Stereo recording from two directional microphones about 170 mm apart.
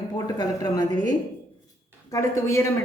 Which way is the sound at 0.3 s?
25° left (ahead or behind).